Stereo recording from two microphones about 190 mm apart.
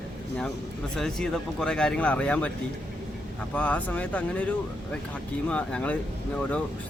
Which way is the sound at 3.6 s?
5° left (ahead or behind).